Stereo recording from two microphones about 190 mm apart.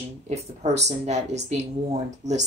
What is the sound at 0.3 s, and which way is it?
Speech, 35° right (ahead or behind).